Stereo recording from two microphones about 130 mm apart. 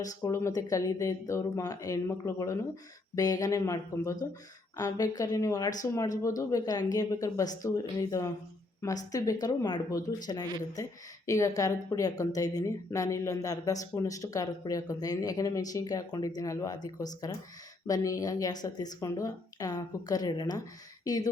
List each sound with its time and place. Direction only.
0.0 s speech: 25° left (ahead or behind)